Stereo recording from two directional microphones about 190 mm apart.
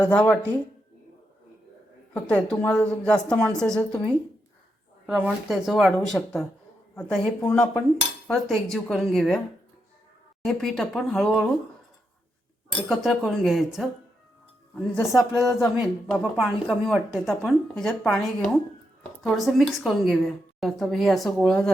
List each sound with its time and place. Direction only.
0.0 s speech: 5° left (ahead or behind)
2.1 s speech: 5° left (ahead or behind)
5.0 s speech: 5° right (ahead or behind)
10.4 s speech: centre (ahead or behind)
12.7 s speech: centre (ahead or behind)